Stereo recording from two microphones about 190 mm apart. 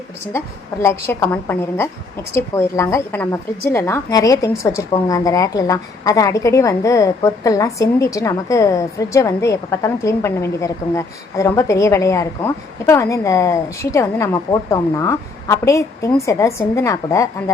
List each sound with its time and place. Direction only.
0.3 s a woman's voice: 15° left (ahead or behind)